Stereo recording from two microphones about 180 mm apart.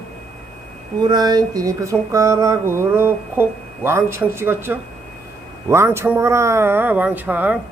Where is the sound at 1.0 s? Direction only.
20° right (ahead or behind).